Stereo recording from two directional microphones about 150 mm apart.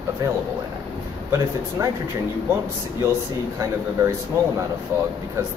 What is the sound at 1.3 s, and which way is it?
Speech, 20° right (ahead or behind).